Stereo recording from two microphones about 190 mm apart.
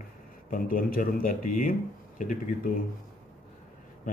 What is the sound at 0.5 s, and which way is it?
Speech, 50° left (ahead or behind).